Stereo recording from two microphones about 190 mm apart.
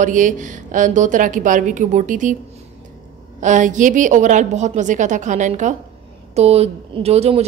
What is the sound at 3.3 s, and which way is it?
A woman's voice, 40° right (ahead or behind).